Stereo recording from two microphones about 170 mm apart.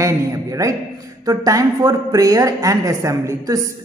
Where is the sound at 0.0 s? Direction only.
20° right (ahead or behind).